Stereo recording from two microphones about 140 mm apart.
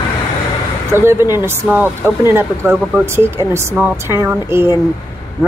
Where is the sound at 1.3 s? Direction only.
15° right (ahead or behind).